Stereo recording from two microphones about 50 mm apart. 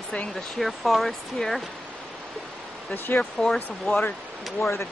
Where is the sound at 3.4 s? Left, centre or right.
Centre.